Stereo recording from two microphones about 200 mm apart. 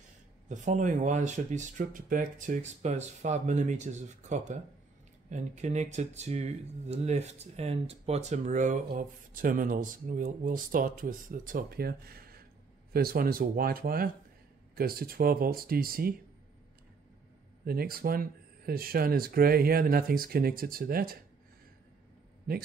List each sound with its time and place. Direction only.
0.5 s speech: 40° right (ahead or behind)
17.6 s speech: 50° right (ahead or behind)
22.5 s speech: 50° right (ahead or behind)